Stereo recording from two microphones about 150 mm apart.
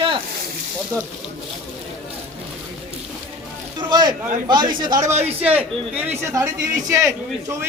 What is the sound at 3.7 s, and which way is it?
A man's voice, 30° right (ahead or behind).